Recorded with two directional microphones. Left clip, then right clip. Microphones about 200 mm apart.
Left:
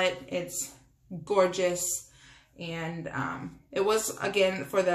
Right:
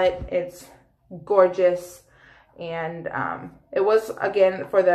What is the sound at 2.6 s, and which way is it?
Speech, 25° left (ahead or behind).